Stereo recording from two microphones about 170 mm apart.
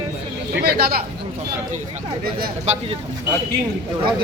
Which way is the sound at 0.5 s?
65° right (ahead or behind).